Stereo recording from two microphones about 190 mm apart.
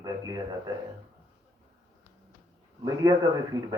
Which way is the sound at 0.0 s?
20° right (ahead or behind).